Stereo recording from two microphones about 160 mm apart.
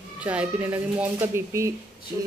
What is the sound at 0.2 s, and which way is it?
A man's voice, 10° right (ahead or behind).